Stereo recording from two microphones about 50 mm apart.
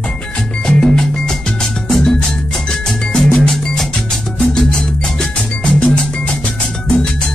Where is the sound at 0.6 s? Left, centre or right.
Centre.